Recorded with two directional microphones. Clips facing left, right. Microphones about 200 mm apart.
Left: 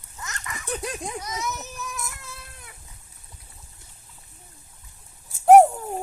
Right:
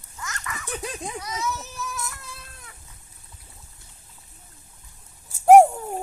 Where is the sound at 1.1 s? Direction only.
15° left (ahead or behind).